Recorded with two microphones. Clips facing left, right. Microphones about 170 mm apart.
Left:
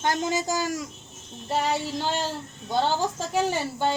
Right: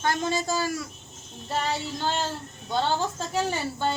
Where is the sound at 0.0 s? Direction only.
20° left (ahead or behind).